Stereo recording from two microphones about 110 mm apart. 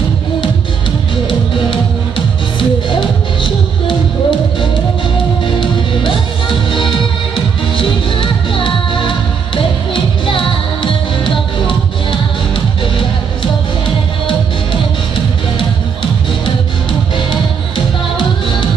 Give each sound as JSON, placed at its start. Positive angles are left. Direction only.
{"t": 2.9, "sound": "music", "side_deg": 50}
{"t": 6.7, "sound": "music", "side_deg": 50}